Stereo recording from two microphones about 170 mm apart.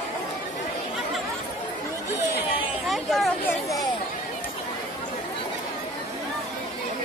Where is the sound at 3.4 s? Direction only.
20° left (ahead or behind).